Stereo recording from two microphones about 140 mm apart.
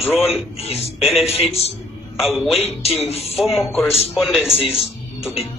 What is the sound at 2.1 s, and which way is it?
Speech, centre (ahead or behind).